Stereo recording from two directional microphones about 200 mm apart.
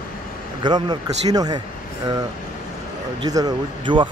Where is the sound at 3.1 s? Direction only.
20° right (ahead or behind).